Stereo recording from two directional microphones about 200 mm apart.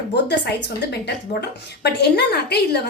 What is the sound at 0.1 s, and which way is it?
A woman's voice, 55° left (ahead or behind).